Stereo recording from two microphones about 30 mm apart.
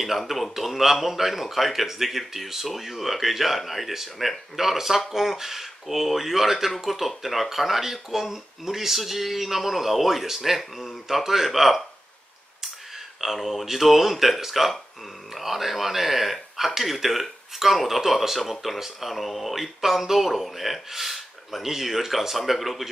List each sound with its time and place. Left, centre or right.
0.3 s a man's voice: centre
13.2 s a man's voice: centre